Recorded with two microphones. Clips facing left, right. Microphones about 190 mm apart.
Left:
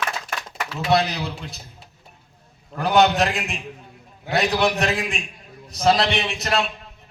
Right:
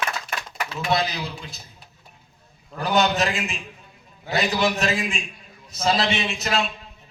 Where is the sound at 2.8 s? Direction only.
65° left (ahead or behind).